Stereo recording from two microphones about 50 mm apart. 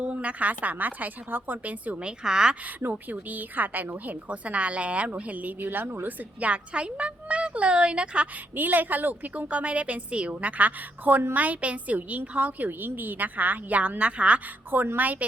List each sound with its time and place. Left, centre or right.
0.0 s speech: right
3.1 s a woman's voice: right
5.5 s speech: right
8.5 s a woman's voice: right